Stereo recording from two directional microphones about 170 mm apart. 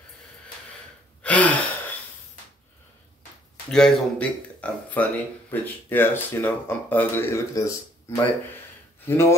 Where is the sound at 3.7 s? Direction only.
5° left (ahead or behind).